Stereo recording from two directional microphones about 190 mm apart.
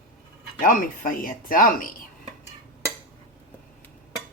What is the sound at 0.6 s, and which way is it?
Speech, 45° left (ahead or behind).